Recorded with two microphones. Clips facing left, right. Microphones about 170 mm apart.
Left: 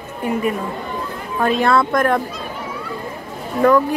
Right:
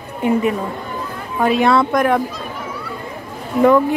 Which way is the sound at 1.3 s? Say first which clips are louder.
Right 2 dB; 10° right (ahead or behind).